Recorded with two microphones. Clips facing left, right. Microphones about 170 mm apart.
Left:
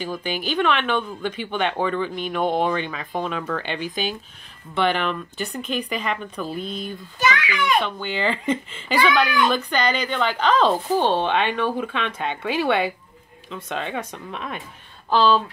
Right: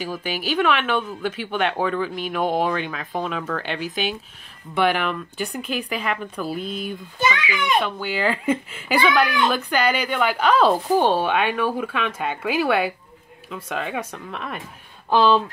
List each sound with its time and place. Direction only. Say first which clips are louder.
0.0 s speech: even; 5° right (ahead or behind)
15.0 s speech: right 1 dB; 15° right (ahead or behind)